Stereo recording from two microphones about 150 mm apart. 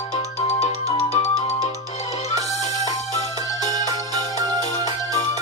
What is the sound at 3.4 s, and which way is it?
Music, 25° right (ahead or behind).